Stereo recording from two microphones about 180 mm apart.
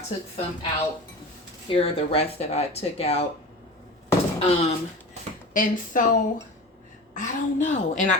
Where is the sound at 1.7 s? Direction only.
30° left (ahead or behind).